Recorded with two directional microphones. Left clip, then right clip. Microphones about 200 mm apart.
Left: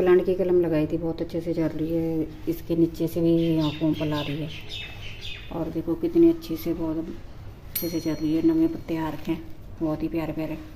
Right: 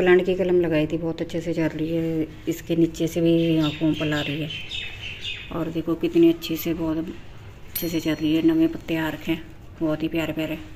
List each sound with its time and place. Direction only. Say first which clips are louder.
0.0 s a woman's voice: right 2 dB; centre (ahead or behind)
3.6 s speech: right 2 dB; 20° right (ahead or behind)
6.0 s a woman's voice: right 1 dB; 5° right (ahead or behind)